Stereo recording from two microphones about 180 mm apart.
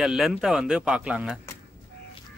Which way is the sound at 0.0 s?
5° right (ahead or behind).